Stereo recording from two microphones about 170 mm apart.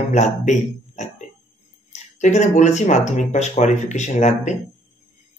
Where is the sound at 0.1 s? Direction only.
45° left (ahead or behind).